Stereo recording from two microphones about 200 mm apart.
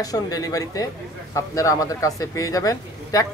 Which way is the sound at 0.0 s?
20° left (ahead or behind).